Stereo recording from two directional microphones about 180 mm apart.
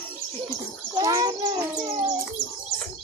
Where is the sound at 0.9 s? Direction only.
20° right (ahead or behind).